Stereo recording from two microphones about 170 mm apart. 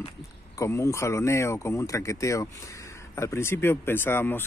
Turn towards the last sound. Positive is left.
turn(degrees=10)  # may be behind; listen again after turning